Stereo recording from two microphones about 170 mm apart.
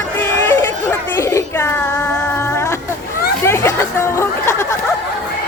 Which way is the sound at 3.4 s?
15° left (ahead or behind).